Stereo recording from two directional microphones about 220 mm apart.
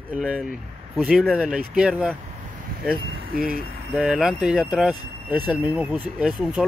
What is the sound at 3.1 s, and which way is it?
Speech, 40° right (ahead or behind).